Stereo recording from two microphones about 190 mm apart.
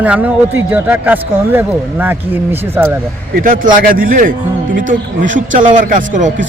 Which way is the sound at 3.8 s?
45° right (ahead or behind).